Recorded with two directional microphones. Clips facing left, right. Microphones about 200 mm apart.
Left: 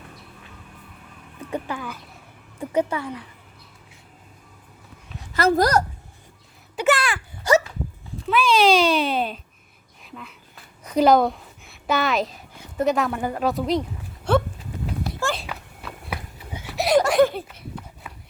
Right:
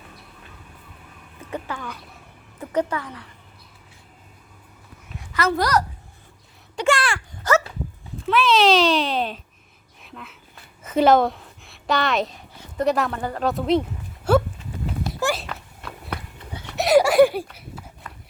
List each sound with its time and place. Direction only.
1.5 s a woman's voice: 10° left (ahead or behind)
5.3 s a woman's voice: 35° left (ahead or behind)
6.7 s a child's voice: 5° left (ahead or behind)
7.5 s dog: 10° left (ahead or behind)
8.3 s a child's voice: centre (ahead or behind)
10.0 s a sound: centre (ahead or behind)
13.1 s a woman's voice: 15° left (ahead or behind)
13.5 s speech: centre (ahead or behind)
14.3 s livestock: 5° right (ahead or behind)
15.4 s a sound: 5° left (ahead or behind)
16.6 s goat: 5° left (ahead or behind)
18.0 s horse: 10° left (ahead or behind)